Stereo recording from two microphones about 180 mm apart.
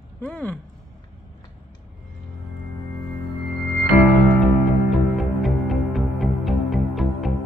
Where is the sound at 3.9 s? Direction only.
10° right (ahead or behind).